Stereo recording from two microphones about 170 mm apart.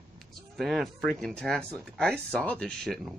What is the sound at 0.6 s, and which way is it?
Speech, centre (ahead or behind).